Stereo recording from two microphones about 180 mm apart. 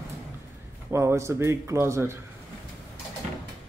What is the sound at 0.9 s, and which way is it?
Speech, 15° right (ahead or behind).